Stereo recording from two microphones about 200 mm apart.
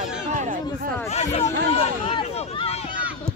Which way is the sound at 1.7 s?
25° left (ahead or behind).